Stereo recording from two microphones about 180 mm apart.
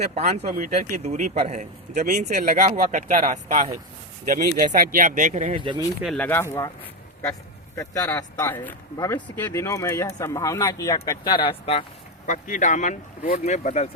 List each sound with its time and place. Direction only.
0.0 s speech: 40° right (ahead or behind)
5.5 s speech: 25° right (ahead or behind)
6.1 s speech: 10° left (ahead or behind)
7.8 s speech: 20° left (ahead or behind)
12.2 s speech: 45° left (ahead or behind)